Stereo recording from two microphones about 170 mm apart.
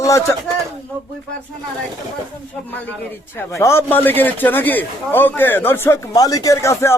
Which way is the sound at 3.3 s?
15° left (ahead or behind).